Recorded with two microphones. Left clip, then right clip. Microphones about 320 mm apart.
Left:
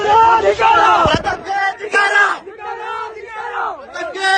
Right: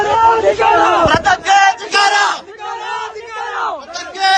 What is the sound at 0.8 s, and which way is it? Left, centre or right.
Speech, right.